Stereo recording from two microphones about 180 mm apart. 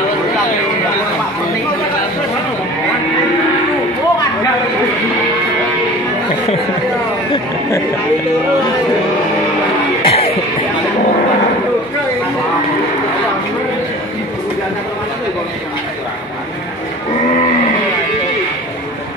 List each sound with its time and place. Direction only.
10.0 s music: 30° left (ahead or behind)